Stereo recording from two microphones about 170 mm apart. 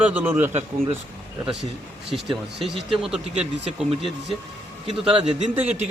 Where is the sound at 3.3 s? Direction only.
40° right (ahead or behind).